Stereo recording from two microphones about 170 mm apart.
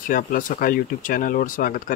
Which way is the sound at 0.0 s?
55° left (ahead or behind).